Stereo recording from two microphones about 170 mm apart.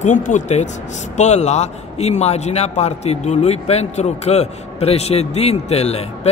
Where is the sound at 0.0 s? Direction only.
50° left (ahead or behind).